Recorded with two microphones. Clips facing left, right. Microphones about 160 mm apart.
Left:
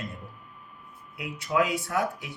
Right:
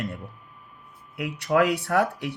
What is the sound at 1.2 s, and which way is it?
Speech, 65° right (ahead or behind).